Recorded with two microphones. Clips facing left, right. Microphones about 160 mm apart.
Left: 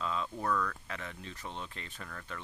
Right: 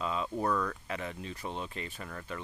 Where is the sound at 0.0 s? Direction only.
15° right (ahead or behind).